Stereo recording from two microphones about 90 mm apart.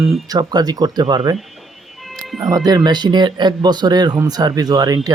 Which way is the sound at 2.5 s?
45° right (ahead or behind).